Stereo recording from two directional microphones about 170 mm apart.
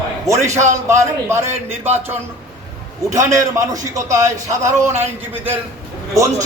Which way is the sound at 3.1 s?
20° right (ahead or behind).